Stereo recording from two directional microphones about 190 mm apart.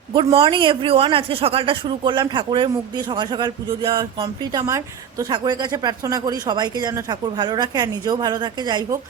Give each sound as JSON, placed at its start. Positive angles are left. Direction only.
{"t": 0.1, "sound": "speech", "side_deg": -25}